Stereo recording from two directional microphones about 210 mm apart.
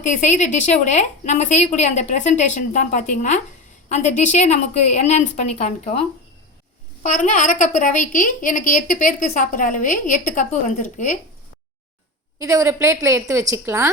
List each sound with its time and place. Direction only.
0.0 s a woman's voice: 35° left (ahead or behind)
12.4 s a woman's voice: 15° right (ahead or behind)